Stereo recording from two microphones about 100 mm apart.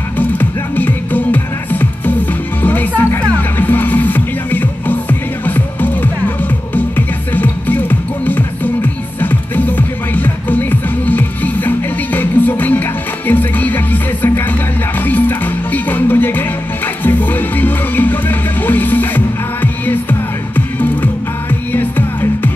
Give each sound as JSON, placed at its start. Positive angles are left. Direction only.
{"t": 0.2, "sound": "music", "side_deg": 20}